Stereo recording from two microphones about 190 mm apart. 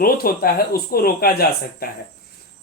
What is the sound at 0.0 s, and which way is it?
Speech, 50° left (ahead or behind).